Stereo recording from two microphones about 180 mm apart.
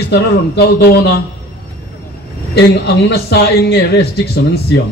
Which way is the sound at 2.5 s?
65° left (ahead or behind).